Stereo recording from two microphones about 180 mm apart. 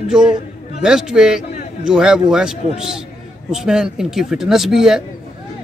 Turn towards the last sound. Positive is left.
turn(degrees=-5)  # may be behind; listen again after turning